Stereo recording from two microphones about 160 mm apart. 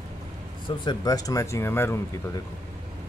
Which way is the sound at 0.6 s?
25° left (ahead or behind).